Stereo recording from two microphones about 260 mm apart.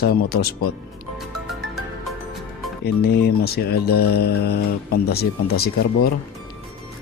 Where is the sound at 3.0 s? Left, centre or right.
Left.